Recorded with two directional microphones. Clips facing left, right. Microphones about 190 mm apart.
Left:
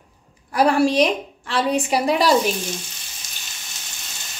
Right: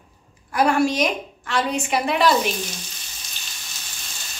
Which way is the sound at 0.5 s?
35° left (ahead or behind).